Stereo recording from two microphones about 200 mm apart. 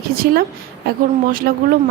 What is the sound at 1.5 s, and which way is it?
Speech, 50° right (ahead or behind).